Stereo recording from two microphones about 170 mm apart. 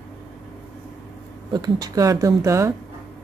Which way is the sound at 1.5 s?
20° right (ahead or behind).